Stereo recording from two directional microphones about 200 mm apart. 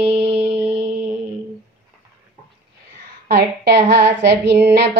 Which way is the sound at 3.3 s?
55° right (ahead or behind).